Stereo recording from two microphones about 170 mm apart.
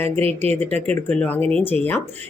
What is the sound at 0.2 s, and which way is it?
Speech, 35° right (ahead or behind).